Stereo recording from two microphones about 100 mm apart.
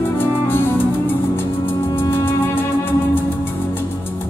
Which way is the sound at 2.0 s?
25° left (ahead or behind).